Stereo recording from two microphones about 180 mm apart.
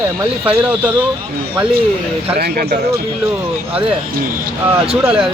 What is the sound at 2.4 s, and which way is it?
Speech, 60° right (ahead or behind).